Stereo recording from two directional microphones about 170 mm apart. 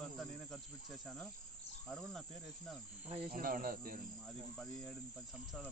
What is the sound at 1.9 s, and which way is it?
Speech, centre (ahead or behind).